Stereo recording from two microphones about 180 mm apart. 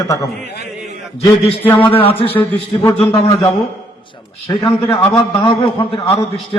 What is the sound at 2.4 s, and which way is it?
Speech, 15° left (ahead or behind).